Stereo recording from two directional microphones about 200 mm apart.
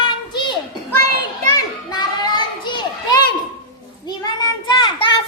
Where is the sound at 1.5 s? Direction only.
20° left (ahead or behind).